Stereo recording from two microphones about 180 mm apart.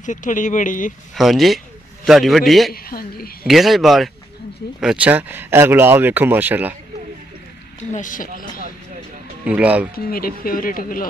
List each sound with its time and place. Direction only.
0.0 s speech: 45° left (ahead or behind)
1.1 s a man's voice: centre (ahead or behind)
2.7 s speech: 55° left (ahead or behind)
3.4 s a man's voice: centre (ahead or behind)
7.9 s speech: 45° left (ahead or behind)
9.4 s speech: 5° right (ahead or behind)
9.9 s speech: 55° left (ahead or behind)